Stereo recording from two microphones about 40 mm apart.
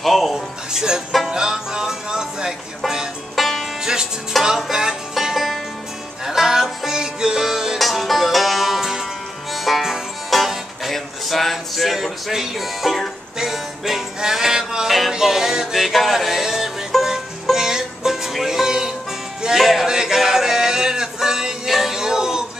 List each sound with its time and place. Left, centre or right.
0.0 s music: centre
0.7 s speech: centre
1.3 s music: centre
3.3 s music: centre
3.8 s music: centre
14.9 s music: centre
15.1 s a sound: centre
15.8 s music: centre
19.9 s a sound: centre
21.6 s music: centre